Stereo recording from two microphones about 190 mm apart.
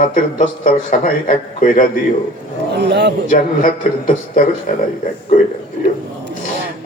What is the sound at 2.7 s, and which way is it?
Speech, 60° right (ahead or behind).